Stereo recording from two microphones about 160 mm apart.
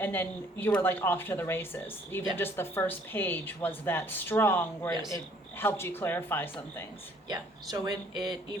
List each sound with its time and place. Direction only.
0.0 s a woman's voice: 15° left (ahead or behind)
4.9 s speech: 25° right (ahead or behind)
5.5 s a woman's voice: 15° left (ahead or behind)
7.3 s speech: 25° right (ahead or behind)